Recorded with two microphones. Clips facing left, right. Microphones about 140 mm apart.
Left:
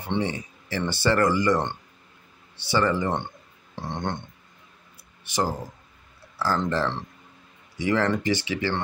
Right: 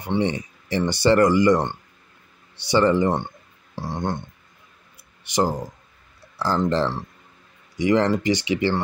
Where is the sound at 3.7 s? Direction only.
5° right (ahead or behind).